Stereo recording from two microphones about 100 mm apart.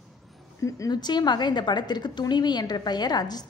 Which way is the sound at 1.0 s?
45° left (ahead or behind).